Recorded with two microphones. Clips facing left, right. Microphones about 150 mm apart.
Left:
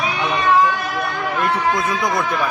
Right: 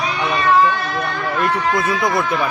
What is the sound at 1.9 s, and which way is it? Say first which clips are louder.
Speech: right 2 dB; 20° left (ahead or behind).